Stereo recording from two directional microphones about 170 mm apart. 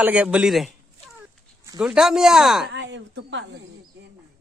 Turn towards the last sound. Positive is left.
turn(degrees=-90)